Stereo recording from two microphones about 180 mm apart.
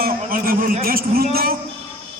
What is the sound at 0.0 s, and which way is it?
A man's voice, 55° right (ahead or behind).